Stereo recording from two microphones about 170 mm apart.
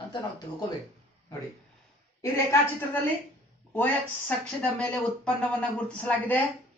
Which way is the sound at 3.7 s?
10° left (ahead or behind).